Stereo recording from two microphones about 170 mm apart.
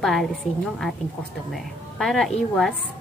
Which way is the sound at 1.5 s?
Centre (ahead or behind).